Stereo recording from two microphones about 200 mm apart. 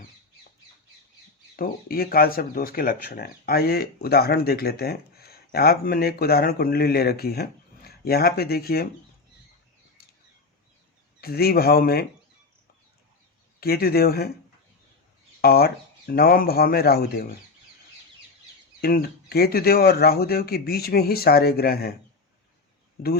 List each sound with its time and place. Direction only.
1.5 s speech: 45° left (ahead or behind)
10.0 s bird: 50° left (ahead or behind)
11.2 s speech: 50° left (ahead or behind)
13.6 s speech: 50° left (ahead or behind)
15.4 s speech: 50° left (ahead or behind)
18.8 s speech: 50° left (ahead or behind)
23.0 s speech: 45° left (ahead or behind)